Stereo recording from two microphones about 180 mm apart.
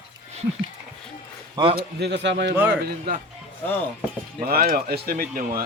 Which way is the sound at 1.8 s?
70° right (ahead or behind).